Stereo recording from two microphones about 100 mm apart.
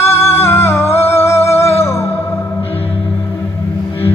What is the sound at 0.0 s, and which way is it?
Music, 25° left (ahead or behind).